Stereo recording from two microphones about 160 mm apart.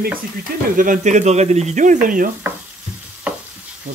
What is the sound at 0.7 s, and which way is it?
Speech, 55° right (ahead or behind).